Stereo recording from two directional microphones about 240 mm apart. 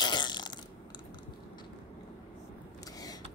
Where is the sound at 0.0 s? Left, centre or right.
Centre.